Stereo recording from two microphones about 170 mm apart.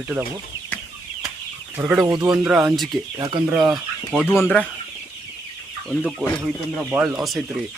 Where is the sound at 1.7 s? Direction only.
10° right (ahead or behind).